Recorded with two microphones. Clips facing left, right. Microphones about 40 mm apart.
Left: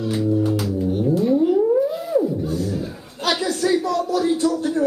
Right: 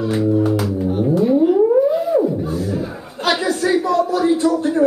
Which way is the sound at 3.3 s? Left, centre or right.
Right.